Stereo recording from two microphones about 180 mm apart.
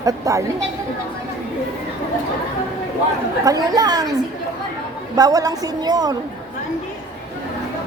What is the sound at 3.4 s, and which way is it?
Speech, 20° right (ahead or behind).